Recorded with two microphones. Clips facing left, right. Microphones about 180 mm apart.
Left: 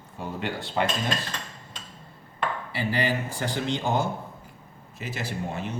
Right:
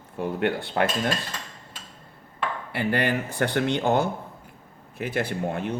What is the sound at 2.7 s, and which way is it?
Speech, 60° right (ahead or behind).